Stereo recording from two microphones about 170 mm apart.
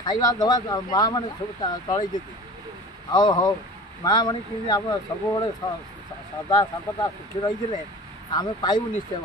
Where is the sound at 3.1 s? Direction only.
25° left (ahead or behind).